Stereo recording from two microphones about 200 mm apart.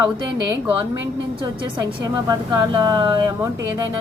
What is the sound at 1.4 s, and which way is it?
A woman's voice, 25° right (ahead or behind).